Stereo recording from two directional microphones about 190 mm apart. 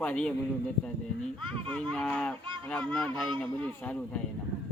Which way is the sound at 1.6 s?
5° left (ahead or behind).